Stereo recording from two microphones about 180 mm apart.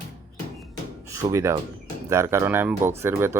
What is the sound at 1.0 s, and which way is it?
Speech, 15° right (ahead or behind).